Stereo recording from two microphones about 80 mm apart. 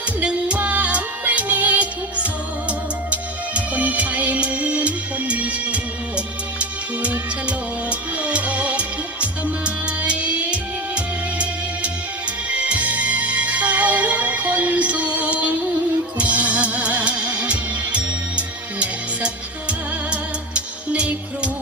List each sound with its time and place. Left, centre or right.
0.2 s music: centre